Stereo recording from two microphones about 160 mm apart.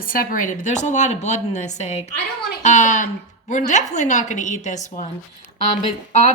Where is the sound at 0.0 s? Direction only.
65° left (ahead or behind); by 5.0 s 45° left (ahead or behind).